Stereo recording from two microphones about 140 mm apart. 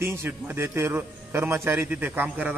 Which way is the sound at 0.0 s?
15° right (ahead or behind).